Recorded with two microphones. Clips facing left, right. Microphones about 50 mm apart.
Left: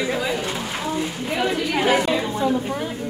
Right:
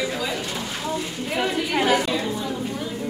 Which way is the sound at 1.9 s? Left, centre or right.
Left.